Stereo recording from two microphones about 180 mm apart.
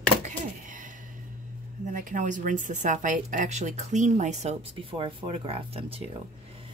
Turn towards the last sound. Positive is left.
turn(degrees=-30)  # may be behind; listen again after turning